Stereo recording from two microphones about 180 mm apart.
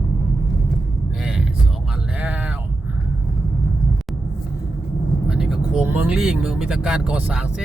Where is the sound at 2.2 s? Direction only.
5° right (ahead or behind).